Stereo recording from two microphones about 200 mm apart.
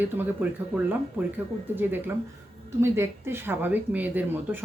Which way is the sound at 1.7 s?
10° right (ahead or behind).